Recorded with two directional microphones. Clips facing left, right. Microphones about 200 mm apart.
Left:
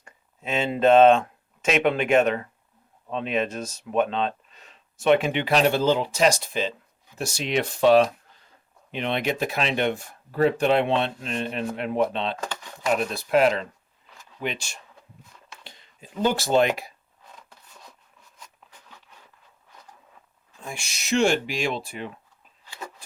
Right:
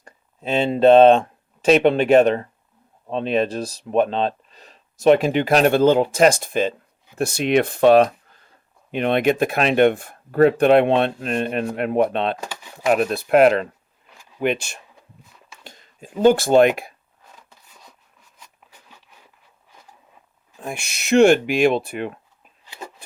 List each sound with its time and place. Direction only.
0.0 s speech: 35° right (ahead or behind); by 12.4 s 55° right (ahead or behind)
12.4 s a sound: 10° right (ahead or behind)
12.9 s speech: 60° right (ahead or behind)
15.6 s speech: 45° right (ahead or behind)
17.3 s a sound: centre (ahead or behind)
20.6 s speech: 60° right (ahead or behind)